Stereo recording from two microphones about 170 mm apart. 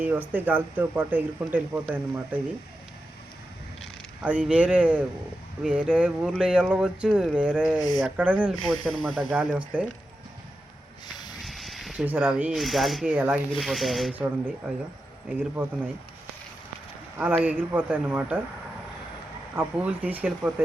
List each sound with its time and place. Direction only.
0.0 s speech: 10° right (ahead or behind)
4.2 s speech: 10° right (ahead or behind)
7.8 s speech: 25° left (ahead or behind)
8.0 s speech: 10° right (ahead or behind)
11.4 s speech: centre (ahead or behind)
13.1 s speech: 10° right (ahead or behind)
13.6 s speech: centre (ahead or behind)
17.2 s speech: 10° right (ahead or behind)
19.5 s speech: 10° right (ahead or behind)